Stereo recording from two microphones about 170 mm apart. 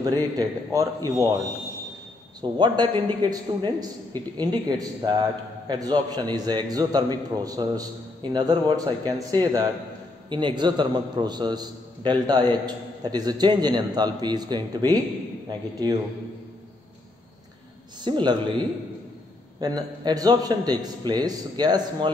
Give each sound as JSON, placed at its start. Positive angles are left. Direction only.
{"t": 0.0, "sound": "a man's voice", "side_deg": -20}
{"t": 2.5, "sound": "a man's voice", "side_deg": -25}
{"t": 18.0, "sound": "a man's voice", "side_deg": -25}
{"t": 19.6, "sound": "a man's voice", "side_deg": -25}